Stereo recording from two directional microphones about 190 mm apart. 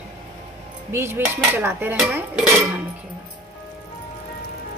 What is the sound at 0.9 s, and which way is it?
Dishes, 10° right (ahead or behind).